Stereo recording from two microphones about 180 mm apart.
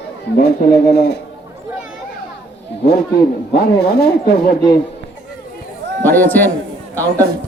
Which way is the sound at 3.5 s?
60° left (ahead or behind).